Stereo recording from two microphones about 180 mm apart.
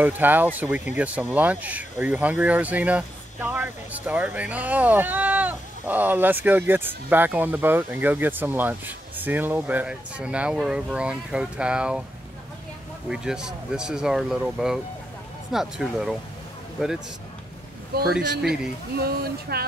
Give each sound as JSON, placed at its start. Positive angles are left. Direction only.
{"t": 0.0, "sound": "speech", "side_deg": -10}
{"t": 13.1, "sound": "speech", "side_deg": -5}
{"t": 17.9, "sound": "speech", "side_deg": -60}